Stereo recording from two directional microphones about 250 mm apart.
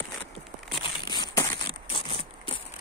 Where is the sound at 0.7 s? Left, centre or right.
Centre.